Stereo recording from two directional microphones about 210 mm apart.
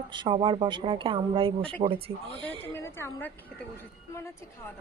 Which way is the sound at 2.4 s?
10° left (ahead or behind).